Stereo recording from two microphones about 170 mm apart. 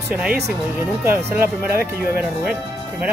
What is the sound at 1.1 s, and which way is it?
Speech, 15° right (ahead or behind).